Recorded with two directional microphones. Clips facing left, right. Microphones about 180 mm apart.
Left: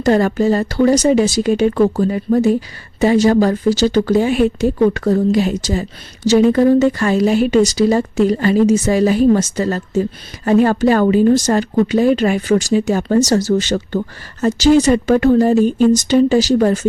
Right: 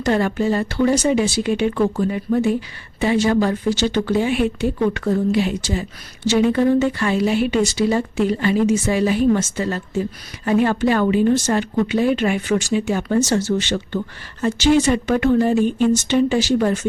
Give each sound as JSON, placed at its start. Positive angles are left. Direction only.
{"t": 0.0, "sound": "speech", "side_deg": 40}